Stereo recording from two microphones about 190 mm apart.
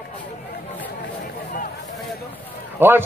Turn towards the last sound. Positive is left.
turn(degrees=-10)  # may be behind; listen again after turning